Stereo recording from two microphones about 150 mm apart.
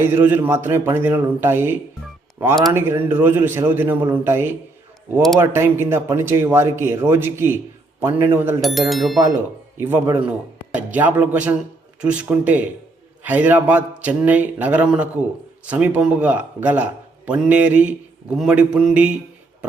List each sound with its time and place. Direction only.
0.0 s a man's voice: 15° right (ahead or behind)
2.7 s a man's voice: 15° right (ahead or behind)
8.6 s speech: centre (ahead or behind)
9.7 s a man's voice: 15° right (ahead or behind)